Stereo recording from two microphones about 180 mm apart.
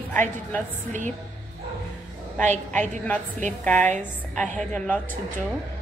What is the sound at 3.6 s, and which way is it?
A woman's voice, 10° left (ahead or behind).